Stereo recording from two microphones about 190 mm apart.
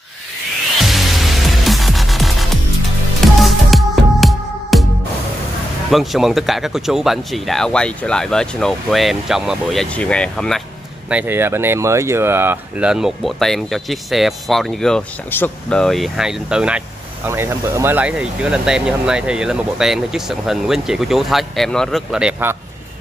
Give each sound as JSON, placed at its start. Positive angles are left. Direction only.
{"t": 0.8, "sound": "music", "side_deg": 0}
{"t": 5.9, "sound": "speech", "side_deg": 0}
{"t": 11.1, "sound": "speech", "side_deg": -10}